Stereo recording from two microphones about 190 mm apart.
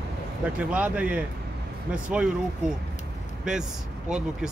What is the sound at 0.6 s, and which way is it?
Speech, 5° right (ahead or behind).